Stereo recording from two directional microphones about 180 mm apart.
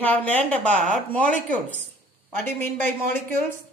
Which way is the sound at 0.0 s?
10° left (ahead or behind).